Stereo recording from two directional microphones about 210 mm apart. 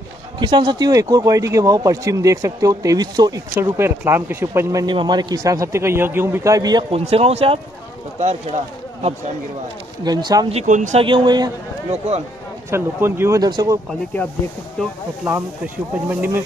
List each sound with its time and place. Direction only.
0.4 s speech: 20° right (ahead or behind)
10.0 s speech: 20° right (ahead or behind)
10.5 s speech: 35° right (ahead or behind)
12.7 s speech: 10° right (ahead or behind)
14.8 s speech: 5° left (ahead or behind)
15.3 s speech: 10° right (ahead or behind)